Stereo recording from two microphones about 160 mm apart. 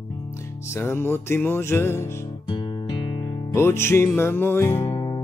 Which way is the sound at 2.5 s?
30° left (ahead or behind).